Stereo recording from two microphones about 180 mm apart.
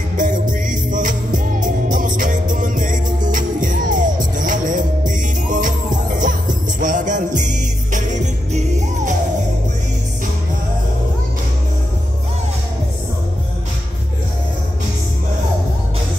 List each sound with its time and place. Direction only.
0.2 s music: 45° right (ahead or behind)